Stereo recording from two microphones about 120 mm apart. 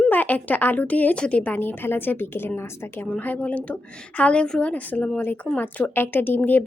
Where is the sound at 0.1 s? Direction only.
15° left (ahead or behind).